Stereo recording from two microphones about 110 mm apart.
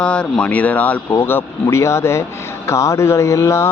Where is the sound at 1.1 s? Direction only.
20° left (ahead or behind).